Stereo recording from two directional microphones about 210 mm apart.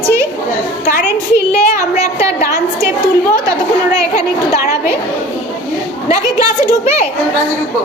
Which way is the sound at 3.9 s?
15° right (ahead or behind).